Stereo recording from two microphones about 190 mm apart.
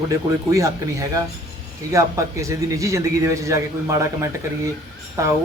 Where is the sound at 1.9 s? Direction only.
15° right (ahead or behind).